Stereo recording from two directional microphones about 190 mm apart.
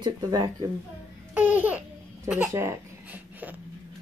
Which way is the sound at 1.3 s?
10° right (ahead or behind).